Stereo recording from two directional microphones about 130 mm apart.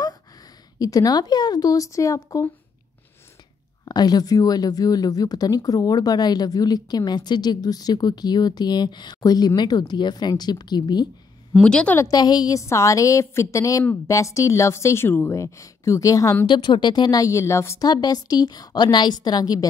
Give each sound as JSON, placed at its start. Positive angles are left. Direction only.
{"t": 0.7, "sound": "a woman's voice", "side_deg": 30}
{"t": 3.8, "sound": "speech", "side_deg": 30}
{"t": 11.6, "sound": "a woman's voice", "side_deg": 10}
{"t": 12.0, "sound": "a woman's voice", "side_deg": 30}
{"t": 16.4, "sound": "a woman's voice", "side_deg": 35}